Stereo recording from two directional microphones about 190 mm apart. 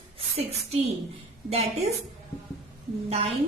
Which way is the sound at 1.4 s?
35° right (ahead or behind).